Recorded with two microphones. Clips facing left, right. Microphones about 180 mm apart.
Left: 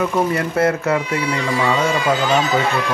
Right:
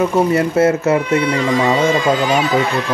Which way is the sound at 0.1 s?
25° right (ahead or behind).